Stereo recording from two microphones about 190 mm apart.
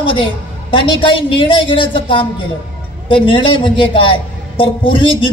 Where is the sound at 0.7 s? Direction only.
25° left (ahead or behind).